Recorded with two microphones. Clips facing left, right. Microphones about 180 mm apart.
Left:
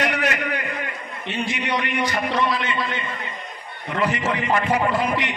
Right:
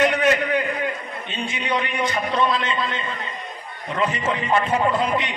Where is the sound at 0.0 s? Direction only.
70° left (ahead or behind).